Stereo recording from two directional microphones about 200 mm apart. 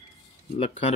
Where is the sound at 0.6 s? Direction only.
30° left (ahead or behind).